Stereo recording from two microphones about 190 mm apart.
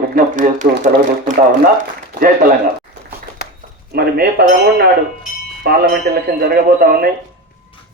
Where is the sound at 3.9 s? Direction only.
55° right (ahead or behind).